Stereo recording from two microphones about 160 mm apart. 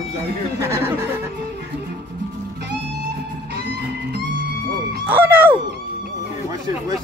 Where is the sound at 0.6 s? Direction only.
15° right (ahead or behind).